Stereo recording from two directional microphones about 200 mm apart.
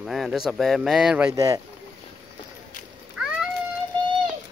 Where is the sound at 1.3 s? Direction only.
15° right (ahead or behind).